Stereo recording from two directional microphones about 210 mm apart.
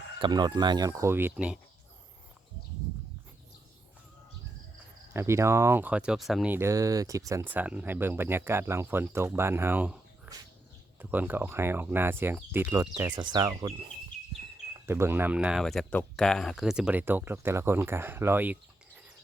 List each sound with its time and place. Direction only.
0.2 s speech: 20° right (ahead or behind)
5.1 s speech: 15° right (ahead or behind)